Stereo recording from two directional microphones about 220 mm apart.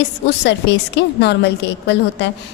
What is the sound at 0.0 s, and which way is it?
A woman's voice, 55° left (ahead or behind).